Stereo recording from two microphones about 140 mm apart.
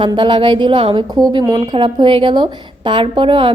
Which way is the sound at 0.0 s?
35° right (ahead or behind).